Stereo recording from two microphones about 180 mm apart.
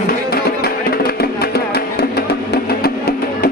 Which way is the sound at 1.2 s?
60° left (ahead or behind).